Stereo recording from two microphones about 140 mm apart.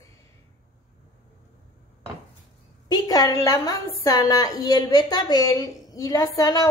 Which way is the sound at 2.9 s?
30° left (ahead or behind).